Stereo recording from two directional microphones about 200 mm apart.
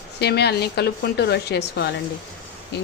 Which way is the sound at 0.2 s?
55° left (ahead or behind).